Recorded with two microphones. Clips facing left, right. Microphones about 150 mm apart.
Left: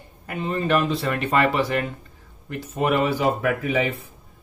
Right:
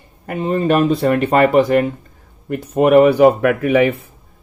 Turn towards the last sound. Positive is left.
turn(degrees=-60)  # may be behind; listen again after turning